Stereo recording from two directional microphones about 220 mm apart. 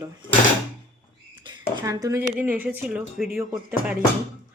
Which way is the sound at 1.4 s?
20° right (ahead or behind).